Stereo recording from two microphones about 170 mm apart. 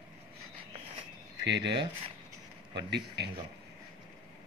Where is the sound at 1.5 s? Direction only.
90° right.